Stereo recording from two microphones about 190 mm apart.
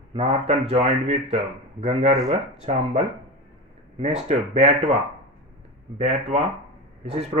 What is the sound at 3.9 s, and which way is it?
Speech, 35° right (ahead or behind).